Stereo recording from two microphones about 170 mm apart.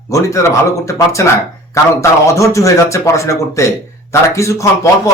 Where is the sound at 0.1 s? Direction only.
15° left (ahead or behind).